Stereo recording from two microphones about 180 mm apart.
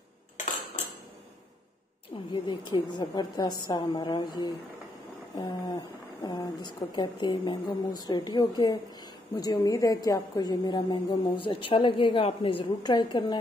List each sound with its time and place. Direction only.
2.3 s a woman's voice: 25° left (ahead or behind)